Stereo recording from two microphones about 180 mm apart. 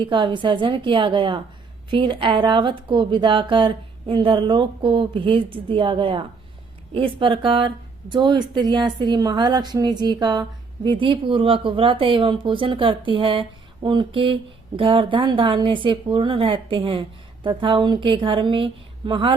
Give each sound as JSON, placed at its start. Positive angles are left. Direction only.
{"t": 0.0, "sound": "a woman's voice", "side_deg": -30}